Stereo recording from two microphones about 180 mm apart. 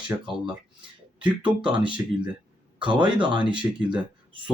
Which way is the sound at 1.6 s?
25° right (ahead or behind).